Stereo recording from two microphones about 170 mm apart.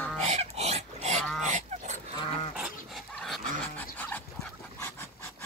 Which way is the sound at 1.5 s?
45° right (ahead or behind).